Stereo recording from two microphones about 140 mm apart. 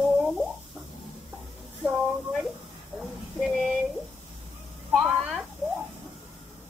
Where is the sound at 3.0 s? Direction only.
Centre (ahead or behind).